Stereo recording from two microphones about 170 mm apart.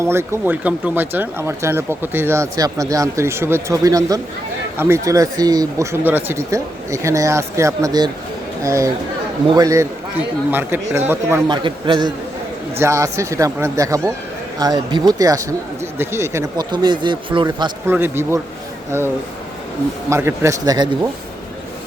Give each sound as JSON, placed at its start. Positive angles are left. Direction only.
{"t": 0.0, "sound": "a man's voice", "side_deg": -15}
{"t": 11.4, "sound": "a man's voice", "side_deg": -30}
{"t": 12.8, "sound": "a man's voice", "side_deg": -15}
{"t": 17.8, "sound": "speech", "side_deg": -15}